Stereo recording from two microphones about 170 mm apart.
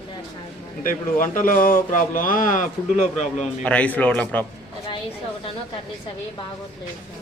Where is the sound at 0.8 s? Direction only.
55° left (ahead or behind).